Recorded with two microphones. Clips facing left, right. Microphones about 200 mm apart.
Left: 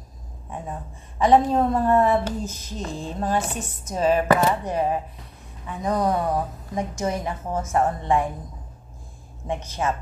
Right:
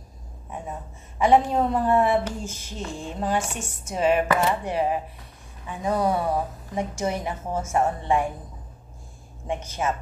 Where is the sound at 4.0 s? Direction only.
35° left (ahead or behind).